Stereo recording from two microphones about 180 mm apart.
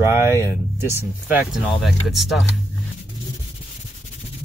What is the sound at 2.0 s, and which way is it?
Speech, centre (ahead or behind).